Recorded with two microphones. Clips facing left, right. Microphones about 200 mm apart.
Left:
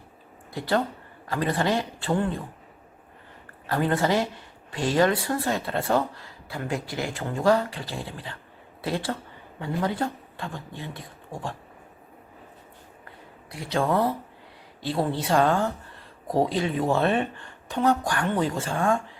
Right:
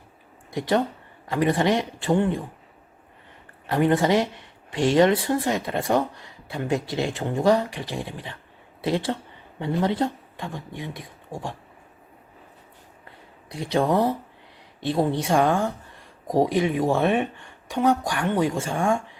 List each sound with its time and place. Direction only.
0.5 s speech: 20° right (ahead or behind)
3.7 s speech: 20° right (ahead or behind)
13.5 s speech: 25° right (ahead or behind)